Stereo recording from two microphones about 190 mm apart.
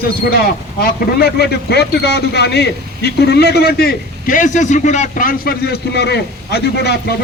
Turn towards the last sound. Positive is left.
turn(degrees=60)  # may be behind; listen again after turning